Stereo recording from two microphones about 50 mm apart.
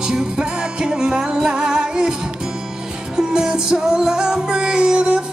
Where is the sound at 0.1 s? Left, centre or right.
Centre.